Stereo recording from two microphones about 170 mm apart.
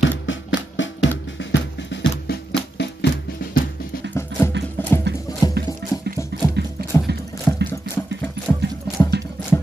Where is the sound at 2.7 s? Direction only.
85° left.